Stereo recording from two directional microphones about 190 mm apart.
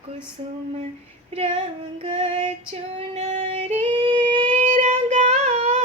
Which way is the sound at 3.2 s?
35° right (ahead or behind).